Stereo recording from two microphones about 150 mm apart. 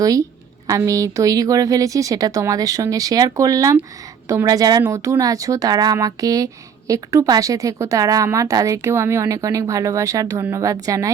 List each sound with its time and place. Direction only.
0.0 s speech: 25° right (ahead or behind)